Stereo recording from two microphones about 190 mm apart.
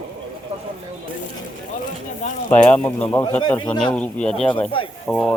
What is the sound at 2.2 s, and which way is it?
Speech, 35° left (ahead or behind).